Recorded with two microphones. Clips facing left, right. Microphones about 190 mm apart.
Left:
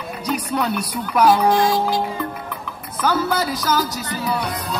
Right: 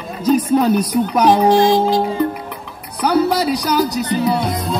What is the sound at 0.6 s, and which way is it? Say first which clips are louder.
Speech: right 8 dB; 40° right (ahead or behind).